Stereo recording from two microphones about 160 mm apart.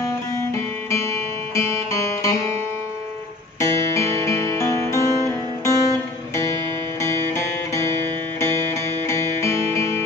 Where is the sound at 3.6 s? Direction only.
15° left (ahead or behind).